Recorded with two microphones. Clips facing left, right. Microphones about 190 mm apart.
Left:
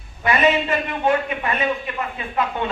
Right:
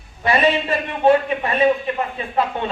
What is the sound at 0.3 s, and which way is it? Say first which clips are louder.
A man's voice: right 1 dB; 30° right (ahead or behind).